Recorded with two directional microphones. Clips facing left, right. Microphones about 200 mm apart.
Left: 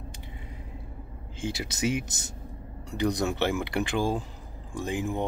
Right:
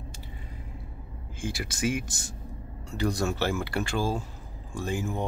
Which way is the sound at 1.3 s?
20° left (ahead or behind).